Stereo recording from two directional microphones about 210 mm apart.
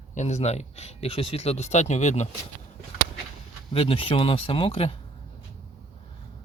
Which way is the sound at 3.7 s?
25° left (ahead or behind).